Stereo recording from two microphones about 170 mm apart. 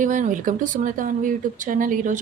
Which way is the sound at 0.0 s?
50° right (ahead or behind).